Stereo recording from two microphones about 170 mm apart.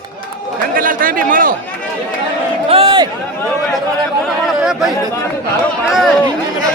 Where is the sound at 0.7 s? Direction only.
55° right (ahead or behind).